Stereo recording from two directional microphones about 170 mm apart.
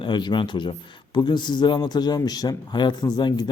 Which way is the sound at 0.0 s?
25° left (ahead or behind).